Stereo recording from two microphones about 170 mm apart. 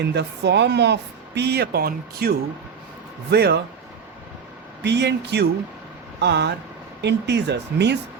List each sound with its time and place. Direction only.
0.0 s speech: 85° right
4.8 s speech: 85° right